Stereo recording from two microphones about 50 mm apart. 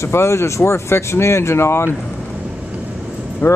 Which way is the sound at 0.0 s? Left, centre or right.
Left.